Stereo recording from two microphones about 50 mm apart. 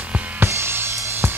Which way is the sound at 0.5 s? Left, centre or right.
Right.